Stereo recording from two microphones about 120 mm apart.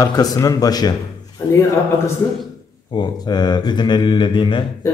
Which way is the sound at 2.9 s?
40° left (ahead or behind).